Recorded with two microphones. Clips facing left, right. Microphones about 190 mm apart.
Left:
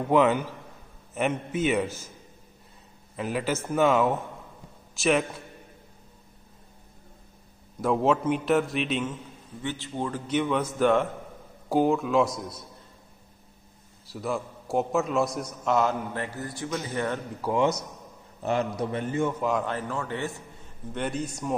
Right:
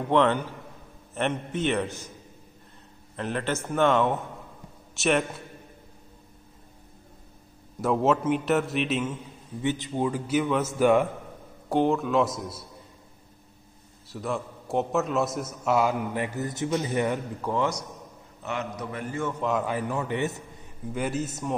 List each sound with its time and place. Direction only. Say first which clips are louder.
0.1 s a man's voice: left 1 dB; 5° left (ahead or behind)
3.2 s a man's voice: left 1 dB; 5° left (ahead or behind)
7.8 s a man's voice: even; centre (ahead or behind)
11.7 s a man's voice: left 1 dB; centre (ahead or behind)
14.0 s a man's voice: even; centre (ahead or behind); by 17.2 s 15° right (ahead or behind)
17.4 s a man's voice: left 5 dB; 15° left (ahead or behind)
18.4 s a man's voice: left 6 dB; 35° left (ahead or behind)
19.4 s a man's voice: right 1 dB; 5° right (ahead or behind); by 20.4 s 20° right (ahead or behind)
20.9 s a man's voice: right 1 dB; 5° right (ahead or behind)